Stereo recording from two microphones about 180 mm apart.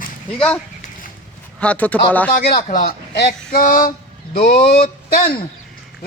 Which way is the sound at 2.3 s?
60° left (ahead or behind).